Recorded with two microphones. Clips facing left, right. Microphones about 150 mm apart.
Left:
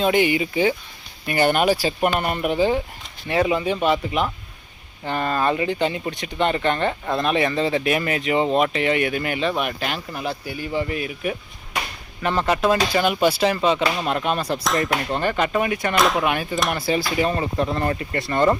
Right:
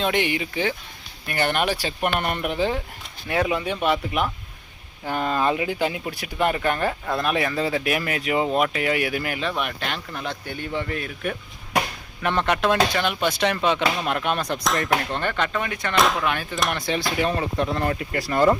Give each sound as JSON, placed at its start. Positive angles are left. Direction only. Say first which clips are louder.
{"t": 0.0, "sound": "speech", "louder": "left 5 dB", "side_deg": 5}
{"t": 16.6, "sound": "speech", "louder": "left 3 dB", "side_deg": 0}